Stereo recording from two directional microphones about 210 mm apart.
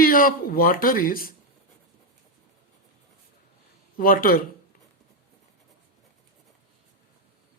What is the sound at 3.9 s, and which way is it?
Speech, 40° left (ahead or behind).